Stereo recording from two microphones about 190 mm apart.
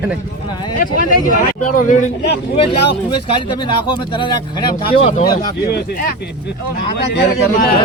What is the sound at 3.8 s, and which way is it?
Speech, 25° left (ahead or behind).